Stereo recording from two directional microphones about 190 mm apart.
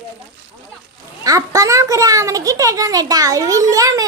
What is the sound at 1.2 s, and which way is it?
A child's voice, 20° right (ahead or behind).